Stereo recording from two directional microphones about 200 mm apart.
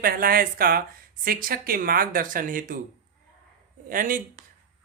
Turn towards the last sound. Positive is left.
turn(degrees=-35)  # may be behind; listen again after turning